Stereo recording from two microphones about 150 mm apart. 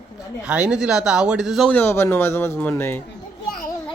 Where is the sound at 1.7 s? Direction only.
15° left (ahead or behind).